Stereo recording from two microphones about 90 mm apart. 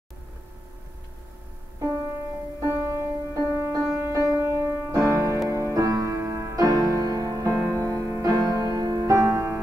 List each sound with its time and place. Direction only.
2.6 s music: 35° right (ahead or behind)